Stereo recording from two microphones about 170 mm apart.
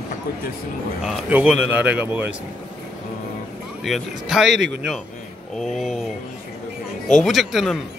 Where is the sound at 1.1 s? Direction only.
10° right (ahead or behind).